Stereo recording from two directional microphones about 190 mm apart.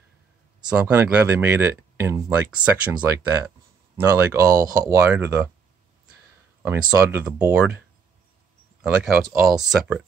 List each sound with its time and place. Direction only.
0.7 s speech: 5° right (ahead or behind)
6.6 s speech: 10° right (ahead or behind)
9.3 s speech: 50° right (ahead or behind)
9.6 s speech: 5° right (ahead or behind)